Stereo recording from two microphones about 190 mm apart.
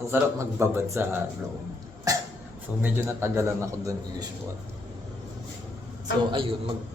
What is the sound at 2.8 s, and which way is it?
A man's voice, 10° right (ahead or behind).